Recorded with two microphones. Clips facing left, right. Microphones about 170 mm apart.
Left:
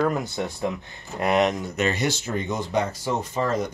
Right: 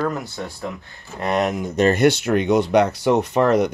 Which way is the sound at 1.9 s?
65° right (ahead or behind).